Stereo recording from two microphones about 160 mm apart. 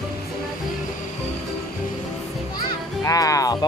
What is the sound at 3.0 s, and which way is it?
Music, 20° left (ahead or behind).